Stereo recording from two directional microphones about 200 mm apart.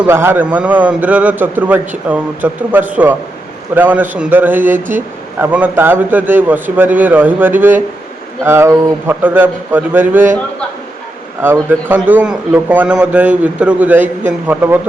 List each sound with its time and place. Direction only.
0.0 s speech: 10° right (ahead or behind)
11.4 s speech: 10° right (ahead or behind)